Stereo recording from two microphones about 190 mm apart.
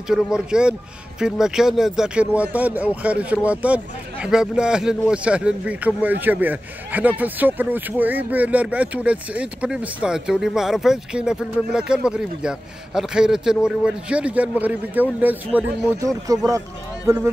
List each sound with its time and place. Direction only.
0.1 s a man's voice: 5° right (ahead or behind)
16.3 s speech: 15° right (ahead or behind)